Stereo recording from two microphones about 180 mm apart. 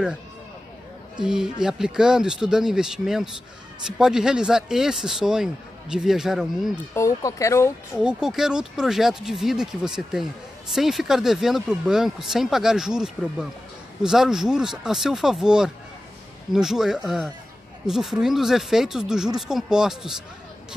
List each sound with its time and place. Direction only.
1.1 s speech: 5° right (ahead or behind)
6.9 s speech: 15° left (ahead or behind)
8.0 s speech: 5° right (ahead or behind)